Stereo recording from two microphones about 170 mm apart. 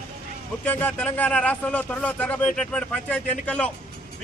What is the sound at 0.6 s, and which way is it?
A man's voice, 10° left (ahead or behind).